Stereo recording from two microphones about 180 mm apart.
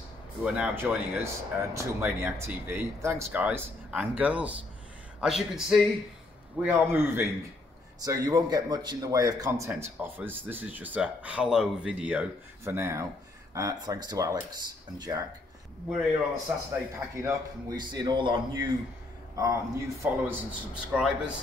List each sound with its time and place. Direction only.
0.4 s a man's voice: 5° right (ahead or behind); by 15.2 s 20° right (ahead or behind)
16.5 s a man's voice: 10° right (ahead or behind)